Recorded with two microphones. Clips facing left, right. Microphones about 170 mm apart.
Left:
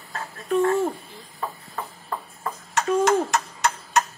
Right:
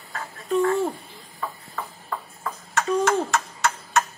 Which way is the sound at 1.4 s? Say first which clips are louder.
Left 1 dB; 20° left (ahead or behind).